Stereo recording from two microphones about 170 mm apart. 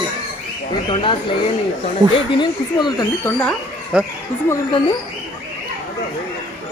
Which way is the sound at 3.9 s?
5° right (ahead or behind).